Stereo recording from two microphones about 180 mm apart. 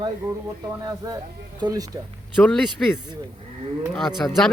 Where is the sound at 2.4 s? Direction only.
10° left (ahead or behind).